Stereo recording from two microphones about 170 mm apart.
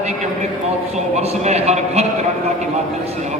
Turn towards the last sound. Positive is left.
turn(degrees=-40)  # may be behind; listen again after turning